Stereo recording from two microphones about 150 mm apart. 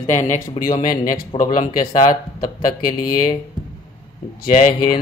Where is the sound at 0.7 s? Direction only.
30° left (ahead or behind).